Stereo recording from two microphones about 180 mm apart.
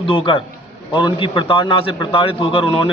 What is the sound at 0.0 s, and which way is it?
A man's voice, 30° left (ahead or behind).